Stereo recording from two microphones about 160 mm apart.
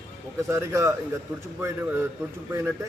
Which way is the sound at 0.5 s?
20° right (ahead or behind).